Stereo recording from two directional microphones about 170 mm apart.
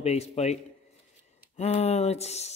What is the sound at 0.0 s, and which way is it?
Speech, 40° left (ahead or behind).